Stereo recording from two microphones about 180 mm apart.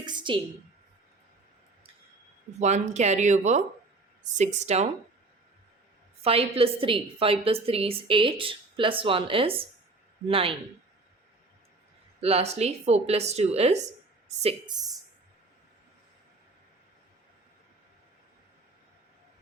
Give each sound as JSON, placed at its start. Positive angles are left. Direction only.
{"t": 0.0, "sound": "a sound", "side_deg": -25}
{"t": 2.6, "sound": "a woman's voice", "side_deg": -40}
{"t": 6.2, "sound": "a woman's voice", "side_deg": -30}
{"t": 12.2, "sound": "a woman's voice", "side_deg": -35}